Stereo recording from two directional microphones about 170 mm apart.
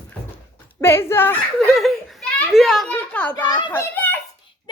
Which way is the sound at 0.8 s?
15° left (ahead or behind).